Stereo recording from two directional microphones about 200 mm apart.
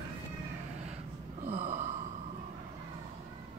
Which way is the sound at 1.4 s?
30° right (ahead or behind).